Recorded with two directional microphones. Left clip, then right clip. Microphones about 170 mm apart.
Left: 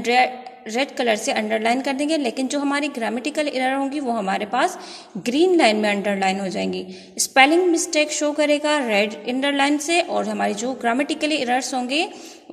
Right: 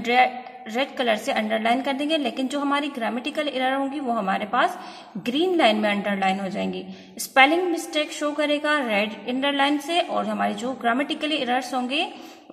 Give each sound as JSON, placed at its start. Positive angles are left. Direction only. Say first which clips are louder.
{"t": 0.0, "sound": "a woman's voice", "louder": "left 1 dB", "side_deg": 30}